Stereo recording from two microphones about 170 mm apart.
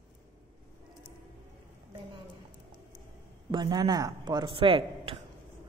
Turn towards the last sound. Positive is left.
turn(degrees=-30)  # may be behind; listen again after turning